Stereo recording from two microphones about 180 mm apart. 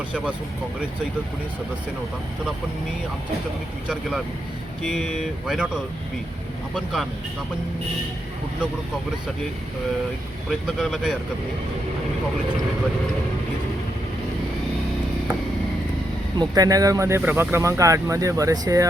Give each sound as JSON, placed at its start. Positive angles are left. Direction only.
{"t": 4.8, "sound": "speech", "side_deg": 0}
{"t": 10.5, "sound": "speech", "side_deg": 0}
{"t": 16.4, "sound": "speech", "side_deg": -20}